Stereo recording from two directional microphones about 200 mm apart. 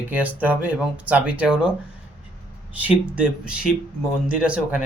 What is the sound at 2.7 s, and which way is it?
A man's voice, 5° right (ahead or behind).